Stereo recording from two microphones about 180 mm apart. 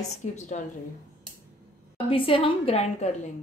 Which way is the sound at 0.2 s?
40° left (ahead or behind).